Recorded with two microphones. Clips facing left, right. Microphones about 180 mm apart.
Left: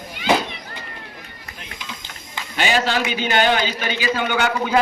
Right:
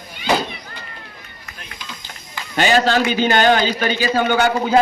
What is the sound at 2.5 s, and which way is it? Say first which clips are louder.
A man's voice: right 5 dB; 45° right (ahead or behind).